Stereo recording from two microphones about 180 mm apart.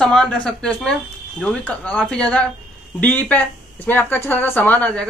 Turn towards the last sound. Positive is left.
turn(degrees=5)  # may be behind; listen again after turning